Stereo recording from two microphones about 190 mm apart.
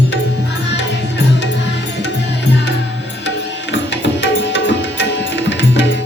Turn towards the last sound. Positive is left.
turn(degrees=70)  # may be behind; listen again after turning